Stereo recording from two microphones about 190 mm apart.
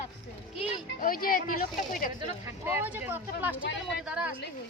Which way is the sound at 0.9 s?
50° left (ahead or behind).